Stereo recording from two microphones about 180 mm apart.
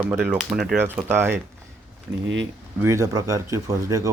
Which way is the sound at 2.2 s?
90° right.